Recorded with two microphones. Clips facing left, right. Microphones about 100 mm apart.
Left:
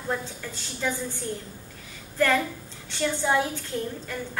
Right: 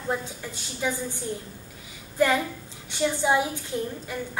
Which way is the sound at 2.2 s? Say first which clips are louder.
Right 1 dB; 15° right (ahead or behind).